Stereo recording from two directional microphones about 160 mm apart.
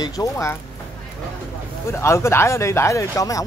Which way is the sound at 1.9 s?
15° left (ahead or behind).